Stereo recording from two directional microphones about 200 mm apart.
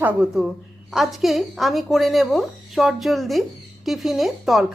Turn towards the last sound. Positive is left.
turn(degrees=0)  # may be behind; listen again after turning